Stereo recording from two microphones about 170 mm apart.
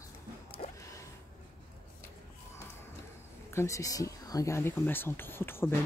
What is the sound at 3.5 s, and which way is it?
Speech, 20° left (ahead or behind).